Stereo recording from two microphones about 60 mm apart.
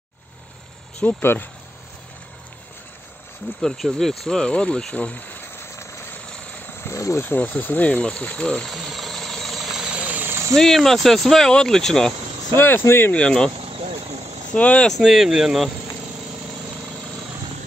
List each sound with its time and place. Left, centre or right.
1.0 s speech: left
3.6 s speech: centre; by 5.5 s left
5.6 s vehicle: left
6.2 s vehicle: centre
6.9 s a sound: left
7.2 s speech: left
7.9 s speech: centre
8.6 s engine: centre
9.9 s engine: right
10.5 s speech: centre
12.5 s speech: left
13.1 s speech: centre
14.5 s speech: centre
14.9 s speech: centre